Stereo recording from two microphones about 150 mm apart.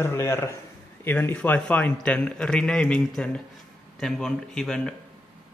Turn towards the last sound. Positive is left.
turn(degrees=5)  # may be behind; listen again after turning